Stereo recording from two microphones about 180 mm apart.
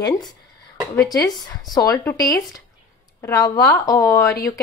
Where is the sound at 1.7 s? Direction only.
20° left (ahead or behind).